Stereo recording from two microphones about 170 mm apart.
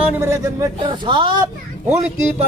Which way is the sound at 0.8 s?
30° right (ahead or behind).